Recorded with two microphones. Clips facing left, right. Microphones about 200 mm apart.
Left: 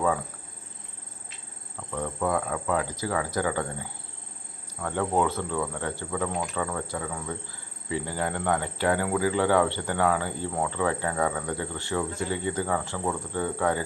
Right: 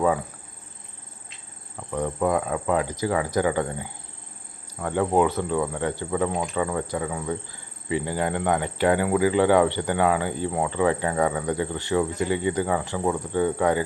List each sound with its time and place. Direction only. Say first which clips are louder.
1.9 s speech: right 4 dB; 20° right (ahead or behind)